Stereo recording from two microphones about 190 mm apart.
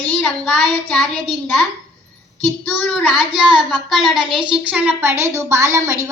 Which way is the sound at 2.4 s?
5° left (ahead or behind).